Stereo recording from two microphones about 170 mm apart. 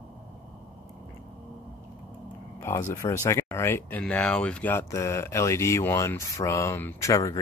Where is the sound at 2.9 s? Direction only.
20° left (ahead or behind).